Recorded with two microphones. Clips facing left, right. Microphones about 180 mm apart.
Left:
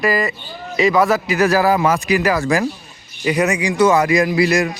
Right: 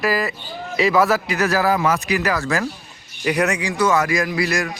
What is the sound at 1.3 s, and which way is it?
A man's voice, 15° left (ahead or behind).